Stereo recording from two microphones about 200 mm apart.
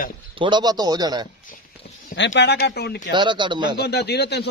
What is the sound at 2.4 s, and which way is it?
Speech, 55° left (ahead or behind).